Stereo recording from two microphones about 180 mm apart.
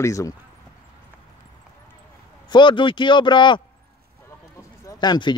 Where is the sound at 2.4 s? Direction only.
25° left (ahead or behind).